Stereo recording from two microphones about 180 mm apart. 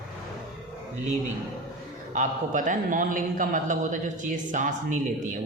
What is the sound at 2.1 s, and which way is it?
Speech, 45° right (ahead or behind).